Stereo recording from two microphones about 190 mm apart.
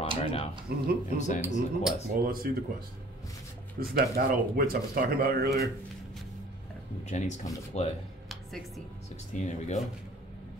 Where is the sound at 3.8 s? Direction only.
50° right (ahead or behind).